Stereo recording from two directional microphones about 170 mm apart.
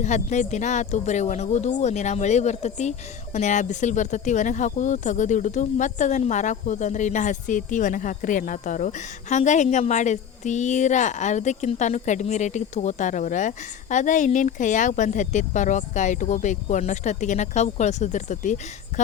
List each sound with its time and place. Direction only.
0.0 s speech: 45° left (ahead or behind)